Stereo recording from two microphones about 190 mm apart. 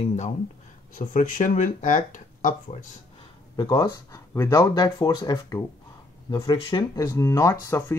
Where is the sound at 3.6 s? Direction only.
20° left (ahead or behind).